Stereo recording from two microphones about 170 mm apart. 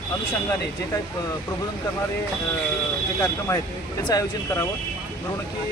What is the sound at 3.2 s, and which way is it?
Speech, 15° left (ahead or behind).